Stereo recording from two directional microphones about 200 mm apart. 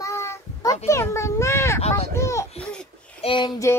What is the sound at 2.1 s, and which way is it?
Speech, 15° left (ahead or behind).